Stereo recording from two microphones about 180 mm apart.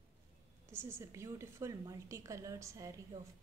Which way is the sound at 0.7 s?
15° right (ahead or behind).